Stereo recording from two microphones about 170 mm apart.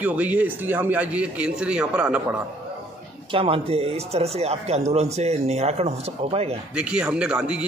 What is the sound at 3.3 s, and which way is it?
Speech, 30° right (ahead or behind).